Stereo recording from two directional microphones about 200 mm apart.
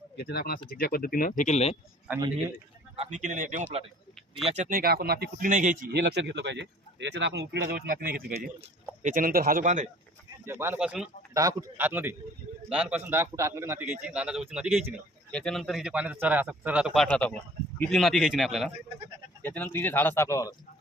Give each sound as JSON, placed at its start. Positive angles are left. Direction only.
{"t": 0.2, "sound": "speech", "side_deg": 50}
{"t": 2.0, "sound": "a man's voice", "side_deg": -20}
{"t": 2.9, "sound": "a man's voice", "side_deg": -35}
{"t": 5.9, "sound": "speech", "side_deg": -55}
{"t": 10.4, "sound": "a man's voice", "side_deg": -10}